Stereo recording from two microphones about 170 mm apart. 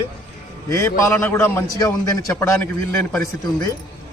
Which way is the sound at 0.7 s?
15° left (ahead or behind).